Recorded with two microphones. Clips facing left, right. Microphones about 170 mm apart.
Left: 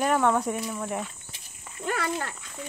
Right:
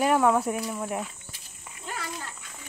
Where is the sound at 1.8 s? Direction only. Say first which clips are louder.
Left 8 dB; 65° left (ahead or behind).